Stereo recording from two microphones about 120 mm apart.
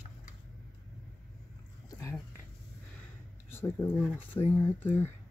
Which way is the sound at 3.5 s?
20° left (ahead or behind).